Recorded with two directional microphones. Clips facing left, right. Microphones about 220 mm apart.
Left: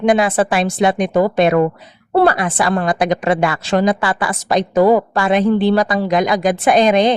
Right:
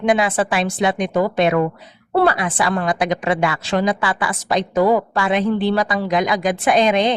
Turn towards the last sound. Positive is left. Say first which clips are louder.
# left 3 dB
turn(degrees=40)  # may be behind; listen again after turning